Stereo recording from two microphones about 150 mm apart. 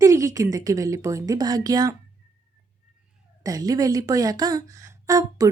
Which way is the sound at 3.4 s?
25° right (ahead or behind).